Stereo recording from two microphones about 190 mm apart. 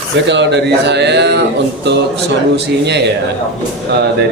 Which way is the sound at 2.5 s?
65° right (ahead or behind).